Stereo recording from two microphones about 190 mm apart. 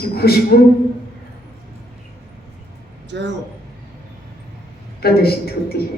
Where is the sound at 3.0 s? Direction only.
70° right (ahead or behind).